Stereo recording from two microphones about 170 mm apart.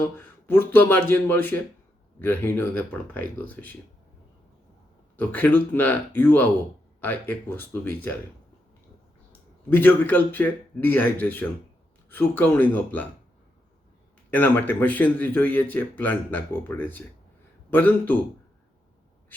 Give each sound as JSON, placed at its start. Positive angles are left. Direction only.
{"t": 0.0, "sound": "speech", "side_deg": 10}
{"t": 5.1, "sound": "speech", "side_deg": 10}
{"t": 9.6, "sound": "speech", "side_deg": 10}
{"t": 14.3, "sound": "speech", "side_deg": 10}